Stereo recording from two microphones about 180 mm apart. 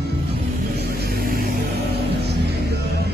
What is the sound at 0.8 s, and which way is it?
Vehicle, 60° right (ahead or behind).